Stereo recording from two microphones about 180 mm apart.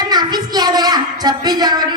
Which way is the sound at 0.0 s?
20° right (ahead or behind).